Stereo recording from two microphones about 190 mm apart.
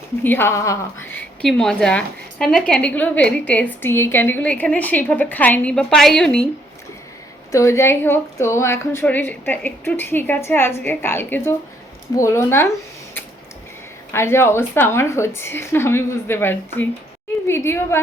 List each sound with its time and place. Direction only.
0.2 s a woman's voice: 10° left (ahead or behind)
7.5 s a woman's voice: 15° left (ahead or behind)
14.1 s a woman's voice: 15° left (ahead or behind)